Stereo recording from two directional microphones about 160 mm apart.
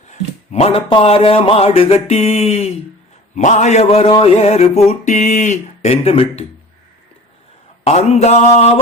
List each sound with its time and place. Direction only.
0.1 s speech: 40° left (ahead or behind)
7.9 s speech: 45° left (ahead or behind)